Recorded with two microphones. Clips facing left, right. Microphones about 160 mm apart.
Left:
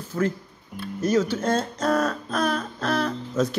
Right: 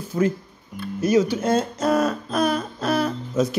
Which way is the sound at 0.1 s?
15° right (ahead or behind).